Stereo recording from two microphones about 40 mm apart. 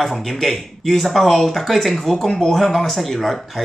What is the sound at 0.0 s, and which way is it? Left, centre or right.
Speech, centre.